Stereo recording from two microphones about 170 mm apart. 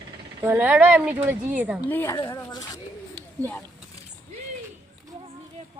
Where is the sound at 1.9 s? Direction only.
15° left (ahead or behind).